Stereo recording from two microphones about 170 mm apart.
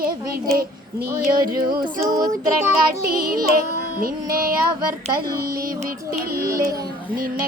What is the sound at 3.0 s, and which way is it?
Child singing, 60° right (ahead or behind).